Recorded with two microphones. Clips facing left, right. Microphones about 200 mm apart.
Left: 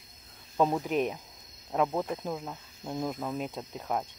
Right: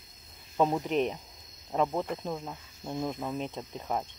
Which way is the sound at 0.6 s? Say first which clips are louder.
Even; centre (ahead or behind).